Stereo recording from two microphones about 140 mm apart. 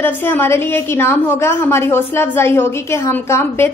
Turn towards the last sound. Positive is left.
turn(degrees=15)  # may be behind; listen again after turning